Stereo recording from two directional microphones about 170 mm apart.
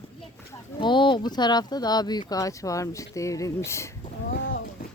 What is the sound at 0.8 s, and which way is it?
Speech, 30° left (ahead or behind).